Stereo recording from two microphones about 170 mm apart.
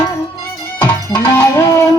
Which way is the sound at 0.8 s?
10° left (ahead or behind).